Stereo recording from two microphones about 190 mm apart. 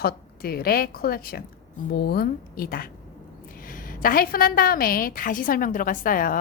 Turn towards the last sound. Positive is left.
turn(degrees=45)  # may be behind; listen again after turning